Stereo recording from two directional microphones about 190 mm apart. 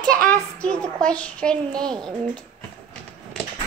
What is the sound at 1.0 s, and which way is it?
Speech, 5° left (ahead or behind).